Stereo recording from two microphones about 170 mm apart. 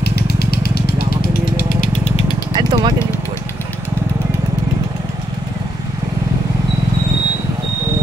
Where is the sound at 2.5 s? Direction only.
25° right (ahead or behind).